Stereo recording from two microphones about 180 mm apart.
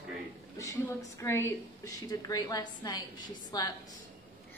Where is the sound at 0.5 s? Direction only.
15° left (ahead or behind).